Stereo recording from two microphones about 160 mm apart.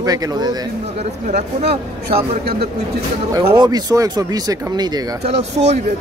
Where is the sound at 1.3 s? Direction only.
40° right (ahead or behind).